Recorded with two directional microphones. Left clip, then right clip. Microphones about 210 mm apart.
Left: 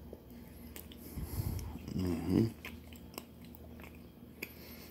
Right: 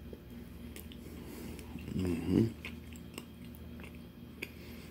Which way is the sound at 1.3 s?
10° left (ahead or behind).